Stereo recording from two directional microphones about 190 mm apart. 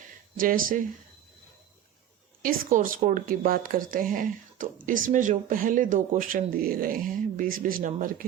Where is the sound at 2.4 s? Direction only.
45° right (ahead or behind).